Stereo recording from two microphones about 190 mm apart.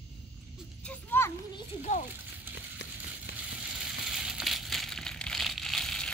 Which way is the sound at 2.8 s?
65° left (ahead or behind).